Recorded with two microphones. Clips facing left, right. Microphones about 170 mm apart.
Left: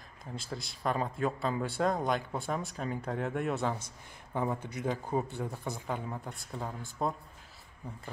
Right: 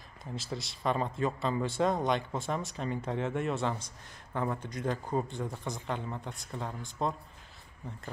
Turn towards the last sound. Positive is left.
turn(degrees=5)  # may be behind; listen again after turning